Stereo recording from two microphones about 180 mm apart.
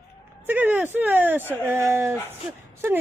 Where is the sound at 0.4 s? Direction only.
10° right (ahead or behind).